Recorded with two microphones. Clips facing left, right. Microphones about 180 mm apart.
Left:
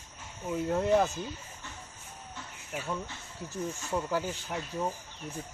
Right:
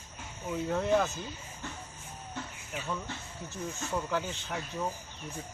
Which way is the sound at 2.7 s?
10° left (ahead or behind).